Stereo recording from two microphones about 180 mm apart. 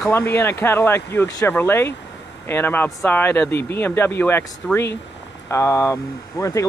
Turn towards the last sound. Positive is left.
turn(degrees=20)  # may be behind; listen again after turning